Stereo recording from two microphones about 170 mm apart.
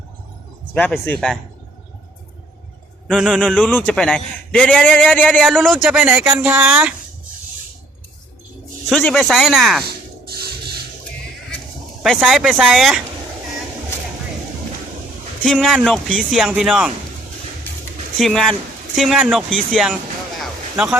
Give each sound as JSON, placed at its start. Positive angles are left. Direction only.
{"t": 0.7, "sound": "a man's voice", "side_deg": 10}
{"t": 3.1, "sound": "a man's voice", "side_deg": 0}
{"t": 8.9, "sound": "speech", "side_deg": 0}
{"t": 9.8, "sound": "rub", "side_deg": -65}
{"t": 12.0, "sound": "speech", "side_deg": 0}
{"t": 15.4, "sound": "speech", "side_deg": 0}
{"t": 17.7, "sound": "a sound", "side_deg": 10}
{"t": 18.2, "sound": "speech", "side_deg": 0}
{"t": 20.4, "sound": "a sound", "side_deg": -5}